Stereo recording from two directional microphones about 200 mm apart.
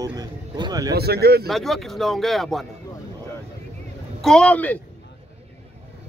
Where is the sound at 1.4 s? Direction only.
Centre (ahead or behind).